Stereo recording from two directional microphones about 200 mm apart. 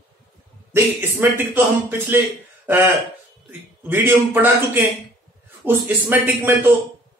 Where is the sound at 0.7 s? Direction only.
10° right (ahead or behind).